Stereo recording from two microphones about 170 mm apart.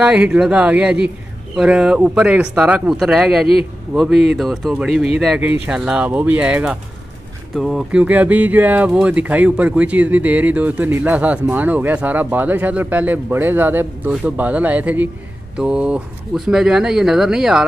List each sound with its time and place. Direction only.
0.0 s speech: 5° right (ahead or behind)